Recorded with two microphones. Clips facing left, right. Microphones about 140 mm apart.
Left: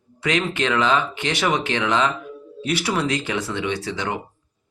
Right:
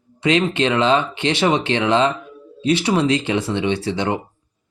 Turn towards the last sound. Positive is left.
turn(degrees=-30)  # may be behind; listen again after turning